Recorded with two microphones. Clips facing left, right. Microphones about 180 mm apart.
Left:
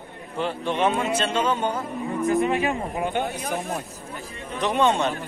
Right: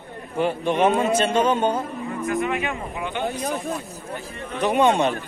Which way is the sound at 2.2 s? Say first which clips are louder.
Left 3 dB; 35° left (ahead or behind).